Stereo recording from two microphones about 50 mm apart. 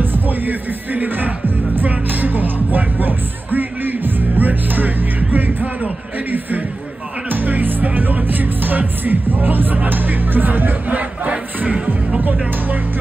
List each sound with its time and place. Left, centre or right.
0.0 s speech: right
1.8 s music: right
7.2 s music: right
12.2 s speech: right